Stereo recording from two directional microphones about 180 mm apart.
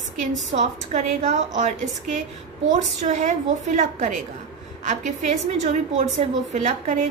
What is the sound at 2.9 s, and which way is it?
A woman's voice, 40° right (ahead or behind).